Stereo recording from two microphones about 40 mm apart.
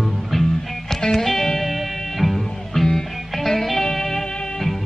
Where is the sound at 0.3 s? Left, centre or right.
Centre.